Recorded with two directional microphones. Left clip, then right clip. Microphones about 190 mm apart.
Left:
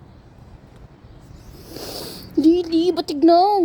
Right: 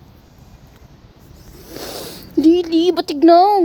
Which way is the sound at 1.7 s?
25° right (ahead or behind).